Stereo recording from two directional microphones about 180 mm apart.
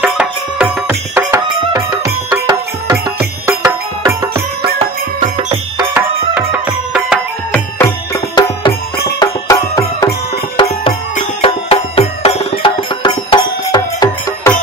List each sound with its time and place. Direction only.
0.0 s music: 5° right (ahead or behind)
5.9 s music: 10° right (ahead or behind)
7.5 s music: 15° left (ahead or behind)
11.4 s music: 30° left (ahead or behind)